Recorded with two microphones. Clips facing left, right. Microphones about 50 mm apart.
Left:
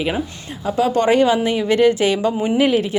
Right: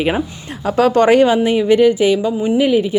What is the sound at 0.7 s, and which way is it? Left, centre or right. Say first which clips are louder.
Speech: right 4 dB; right.